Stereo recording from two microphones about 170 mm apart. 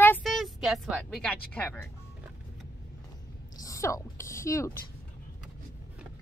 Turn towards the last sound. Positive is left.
turn(degrees=15)  # may be behind; listen again after turning